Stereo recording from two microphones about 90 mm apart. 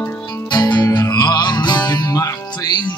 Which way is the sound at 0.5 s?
50° left (ahead or behind).